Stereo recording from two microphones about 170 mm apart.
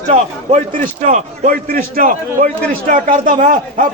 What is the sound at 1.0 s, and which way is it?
A man's voice, 45° right (ahead or behind).